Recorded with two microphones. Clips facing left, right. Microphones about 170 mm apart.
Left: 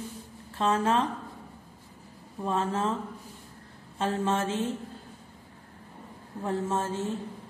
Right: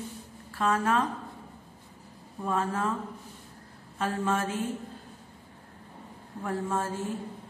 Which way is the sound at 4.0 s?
25° left (ahead or behind).